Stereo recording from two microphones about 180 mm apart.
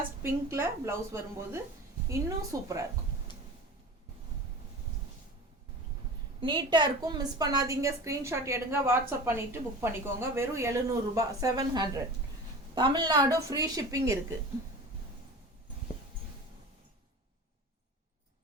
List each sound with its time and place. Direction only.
0.5 s a woman's voice: 15° right (ahead or behind)
6.4 s a woman's voice: 25° right (ahead or behind)